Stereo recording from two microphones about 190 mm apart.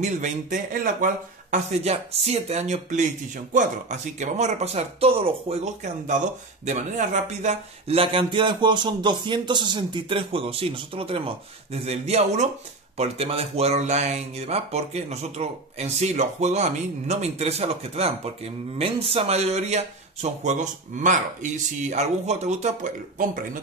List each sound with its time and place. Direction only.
0.0 s speech: 40° right (ahead or behind)